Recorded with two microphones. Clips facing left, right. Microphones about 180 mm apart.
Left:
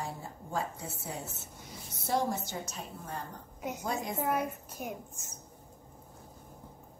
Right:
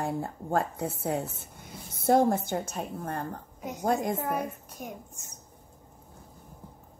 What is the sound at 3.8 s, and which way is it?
Speech, 50° right (ahead or behind).